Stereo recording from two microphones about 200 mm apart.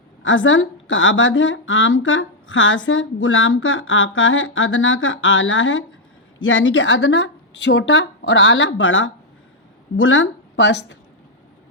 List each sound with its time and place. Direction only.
0.2 s a woman's voice: 70° left (ahead or behind)